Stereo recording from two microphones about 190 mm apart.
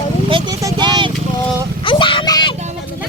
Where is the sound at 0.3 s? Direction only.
25° right (ahead or behind).